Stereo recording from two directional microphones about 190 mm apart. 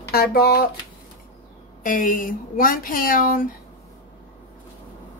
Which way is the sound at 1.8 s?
45° left (ahead or behind).